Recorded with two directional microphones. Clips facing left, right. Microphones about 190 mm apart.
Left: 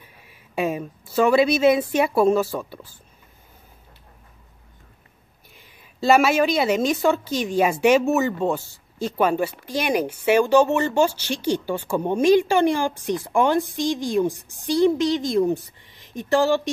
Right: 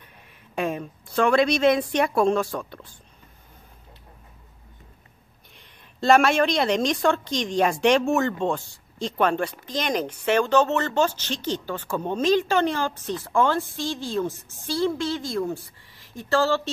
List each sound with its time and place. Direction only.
0.6 s a woman's voice: 5° left (ahead or behind)
5.9 s a woman's voice: 5° left (ahead or behind)